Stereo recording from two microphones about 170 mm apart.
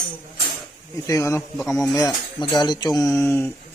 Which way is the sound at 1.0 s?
15° left (ahead or behind).